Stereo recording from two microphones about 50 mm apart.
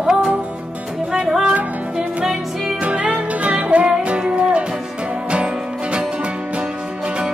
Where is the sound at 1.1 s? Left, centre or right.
Centre.